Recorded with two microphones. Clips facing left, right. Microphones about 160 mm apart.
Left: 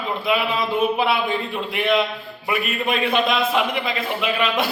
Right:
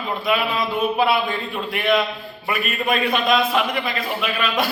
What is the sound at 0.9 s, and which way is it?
Speech, 20° left (ahead or behind).